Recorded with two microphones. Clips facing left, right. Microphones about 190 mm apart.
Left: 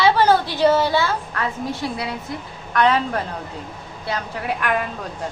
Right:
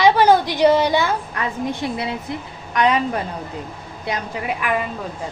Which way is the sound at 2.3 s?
25° right (ahead or behind).